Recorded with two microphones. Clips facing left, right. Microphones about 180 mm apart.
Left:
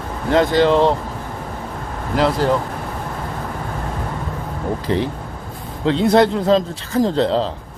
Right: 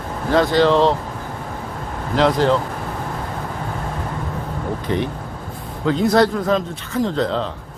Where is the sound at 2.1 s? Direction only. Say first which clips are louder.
Right 1 dB; 5° left (ahead or behind).